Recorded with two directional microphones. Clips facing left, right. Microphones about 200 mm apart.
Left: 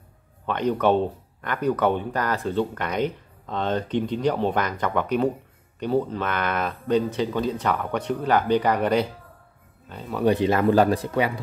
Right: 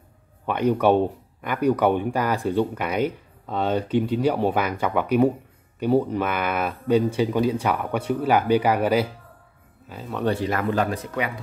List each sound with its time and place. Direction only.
0.5 s speech: 10° right (ahead or behind)
10.2 s speech: 20° left (ahead or behind)